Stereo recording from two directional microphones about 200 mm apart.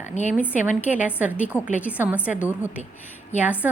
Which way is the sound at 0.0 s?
35° left (ahead or behind).